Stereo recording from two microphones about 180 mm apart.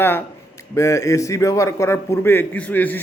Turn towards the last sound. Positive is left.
turn(degrees=10)  # may be behind; listen again after turning